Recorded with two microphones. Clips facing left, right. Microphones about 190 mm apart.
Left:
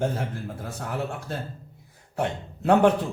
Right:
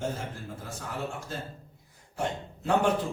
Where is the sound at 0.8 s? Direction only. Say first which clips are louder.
Left 5 dB; 65° left (ahead or behind).